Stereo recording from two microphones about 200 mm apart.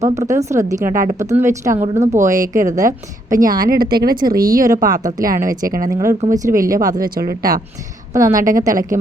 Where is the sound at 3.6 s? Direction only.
50° right (ahead or behind).